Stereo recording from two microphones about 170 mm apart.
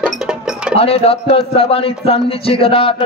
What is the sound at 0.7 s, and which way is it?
Speech, 35° left (ahead or behind).